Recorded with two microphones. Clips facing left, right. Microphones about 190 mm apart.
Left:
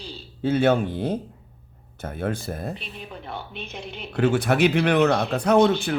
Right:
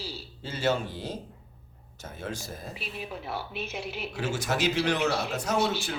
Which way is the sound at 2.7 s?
5° right (ahead or behind).